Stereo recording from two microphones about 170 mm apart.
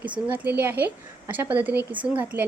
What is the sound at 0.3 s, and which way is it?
A woman's voice, 10° right (ahead or behind).